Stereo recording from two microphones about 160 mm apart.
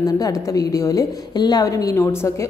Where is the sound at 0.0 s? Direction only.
20° left (ahead or behind).